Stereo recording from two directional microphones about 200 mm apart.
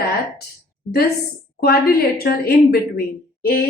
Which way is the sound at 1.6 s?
50° left (ahead or behind).